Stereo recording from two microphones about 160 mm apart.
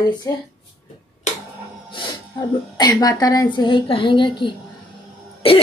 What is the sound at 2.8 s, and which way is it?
A woman's voice, 25° left (ahead or behind).